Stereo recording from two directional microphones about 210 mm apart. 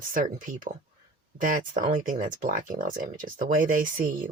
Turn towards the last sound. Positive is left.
turn(degrees=-40)  # may be behind; listen again after turning